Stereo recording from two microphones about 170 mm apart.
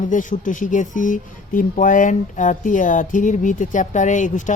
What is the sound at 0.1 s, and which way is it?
Speech, 50° left (ahead or behind).